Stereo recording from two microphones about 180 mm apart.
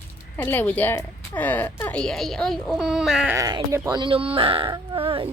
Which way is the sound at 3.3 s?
20° right (ahead or behind).